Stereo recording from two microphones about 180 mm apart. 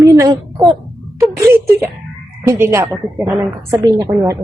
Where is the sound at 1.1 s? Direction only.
15° right (ahead or behind).